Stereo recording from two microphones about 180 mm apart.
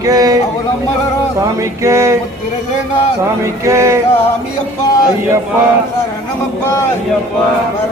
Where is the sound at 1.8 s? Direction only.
15° right (ahead or behind).